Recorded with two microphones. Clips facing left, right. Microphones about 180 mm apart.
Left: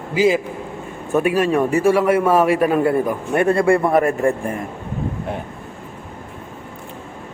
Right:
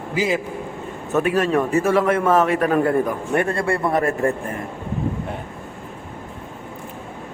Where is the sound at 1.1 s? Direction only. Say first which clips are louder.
Left 2 dB; 15° left (ahead or behind).